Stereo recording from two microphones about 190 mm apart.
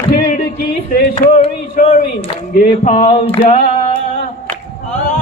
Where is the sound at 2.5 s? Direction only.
40° left (ahead or behind).